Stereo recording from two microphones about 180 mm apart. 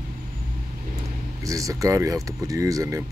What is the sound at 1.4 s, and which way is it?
Speech, 20° right (ahead or behind).